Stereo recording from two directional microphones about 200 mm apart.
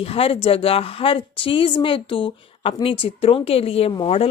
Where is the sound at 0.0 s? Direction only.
30° left (ahead or behind).